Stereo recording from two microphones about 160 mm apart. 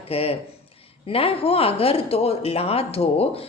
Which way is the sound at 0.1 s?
40° left (ahead or behind).